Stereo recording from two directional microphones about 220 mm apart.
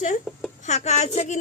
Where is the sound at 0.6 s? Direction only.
30° left (ahead or behind).